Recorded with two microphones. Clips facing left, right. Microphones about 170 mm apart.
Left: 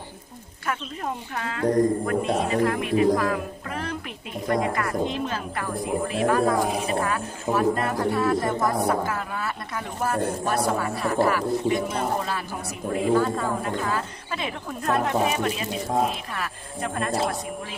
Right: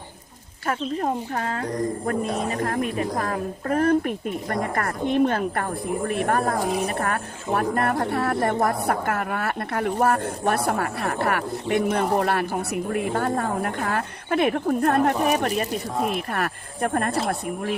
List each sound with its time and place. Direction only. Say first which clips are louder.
0.7 s speech: right 5 dB; 40° right (ahead or behind)
2.6 s a woman's voice: left 4 dB; 45° right (ahead or behind)
16.0 s speech: right 4 dB; 55° right (ahead or behind)